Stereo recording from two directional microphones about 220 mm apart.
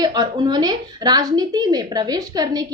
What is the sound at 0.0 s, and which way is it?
A woman's voice, 20° right (ahead or behind).